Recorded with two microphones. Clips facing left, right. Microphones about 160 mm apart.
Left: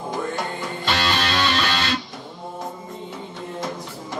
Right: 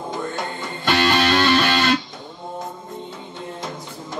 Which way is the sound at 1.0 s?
55° right (ahead or behind).